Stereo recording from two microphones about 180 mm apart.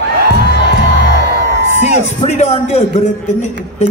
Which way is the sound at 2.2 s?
40° left (ahead or behind).